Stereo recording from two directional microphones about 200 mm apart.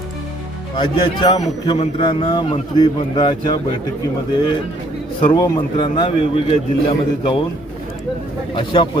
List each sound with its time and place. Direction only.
0.8 s a man's voice: 25° left (ahead or behind)
5.2 s a man's voice: 20° left (ahead or behind)
8.5 s a man's voice: 25° left (ahead or behind)